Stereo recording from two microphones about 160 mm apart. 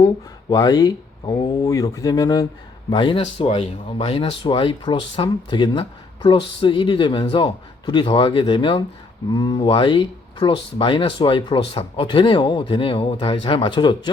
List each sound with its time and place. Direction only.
0.5 s speech: 25° left (ahead or behind)